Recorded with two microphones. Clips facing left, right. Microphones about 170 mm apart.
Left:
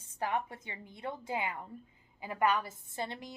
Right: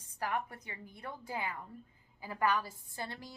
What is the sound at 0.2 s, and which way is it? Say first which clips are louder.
A woman's voice: left 2 dB; 20° left (ahead or behind).